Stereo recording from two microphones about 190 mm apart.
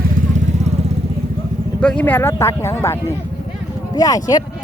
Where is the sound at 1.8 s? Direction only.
5° left (ahead or behind).